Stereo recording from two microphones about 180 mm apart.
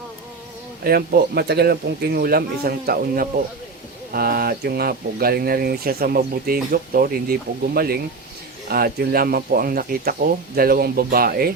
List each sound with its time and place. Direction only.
0.9 s speech: 60° right (ahead or behind)